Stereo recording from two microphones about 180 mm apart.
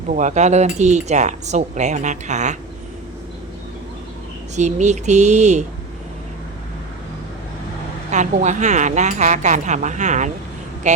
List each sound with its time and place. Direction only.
0.1 s speech: 45° right (ahead or behind)
4.5 s speech: 40° right (ahead or behind)
8.1 s speech: 40° right (ahead or behind)